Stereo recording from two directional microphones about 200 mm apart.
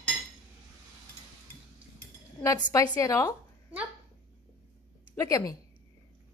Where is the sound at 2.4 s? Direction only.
15° left (ahead or behind).